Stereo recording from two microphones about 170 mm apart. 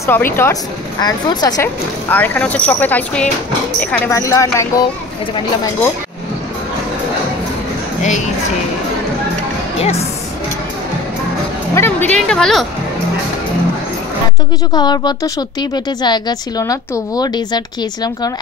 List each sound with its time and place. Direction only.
0.0 s a woman's voice: 15° left (ahead or behind)
2.0 s speech: 10° left (ahead or behind)
4.1 s a woman's voice: 20° left (ahead or behind)
8.0 s a sound: 45° left (ahead or behind)
9.8 s speech: 40° left (ahead or behind)
11.7 s speech: 10° left (ahead or behind)
14.7 s a woman's voice: 25° left (ahead or behind)